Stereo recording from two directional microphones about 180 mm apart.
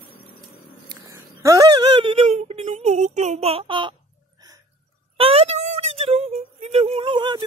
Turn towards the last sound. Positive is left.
turn(degrees=-25)  # may be behind; listen again after turning